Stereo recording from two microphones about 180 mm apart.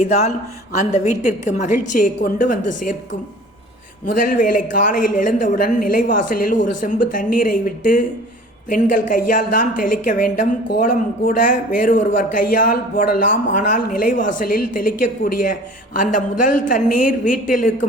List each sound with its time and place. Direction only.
0.0 s a woman's voice: 40° left (ahead or behind)